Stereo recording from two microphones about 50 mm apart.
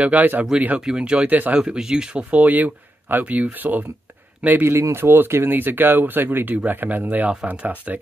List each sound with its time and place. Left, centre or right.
0.0 s speech: right
0.7 s speech: centre
1.2 s speech: right
1.6 s speech: centre
2.3 s speech: right
4.6 s speech: right